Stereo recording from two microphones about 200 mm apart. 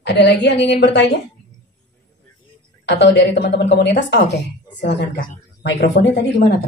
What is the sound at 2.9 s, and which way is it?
Speech, 60° left (ahead or behind).